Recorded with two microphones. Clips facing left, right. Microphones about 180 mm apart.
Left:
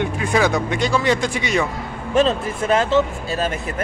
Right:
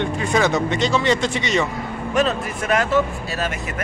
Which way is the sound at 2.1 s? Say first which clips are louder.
Left 3 dB; 30° left (ahead or behind).